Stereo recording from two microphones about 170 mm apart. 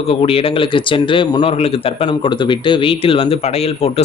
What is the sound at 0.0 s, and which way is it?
A man's voice, 35° left (ahead or behind).